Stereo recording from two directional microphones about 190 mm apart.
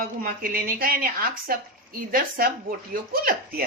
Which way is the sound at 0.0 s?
50° right (ahead or behind).